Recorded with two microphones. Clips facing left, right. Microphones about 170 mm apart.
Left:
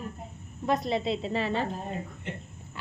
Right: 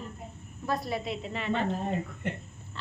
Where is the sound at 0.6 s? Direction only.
20° left (ahead or behind).